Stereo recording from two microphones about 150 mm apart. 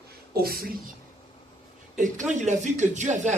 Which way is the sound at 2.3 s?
50° right (ahead or behind).